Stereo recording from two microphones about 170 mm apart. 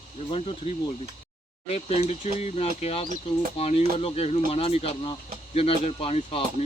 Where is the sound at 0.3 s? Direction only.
35° left (ahead or behind).